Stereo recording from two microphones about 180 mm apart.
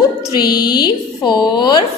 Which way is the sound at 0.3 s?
25° left (ahead or behind).